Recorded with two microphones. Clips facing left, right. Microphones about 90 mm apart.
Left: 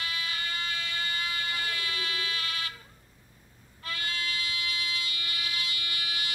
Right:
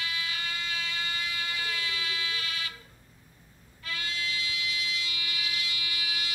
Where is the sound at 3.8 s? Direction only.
50° left (ahead or behind).